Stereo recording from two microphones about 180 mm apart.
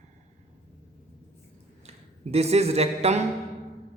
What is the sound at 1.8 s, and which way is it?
Speech, 35° right (ahead or behind).